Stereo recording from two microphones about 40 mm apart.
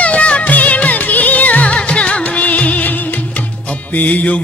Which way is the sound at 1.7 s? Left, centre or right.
Left.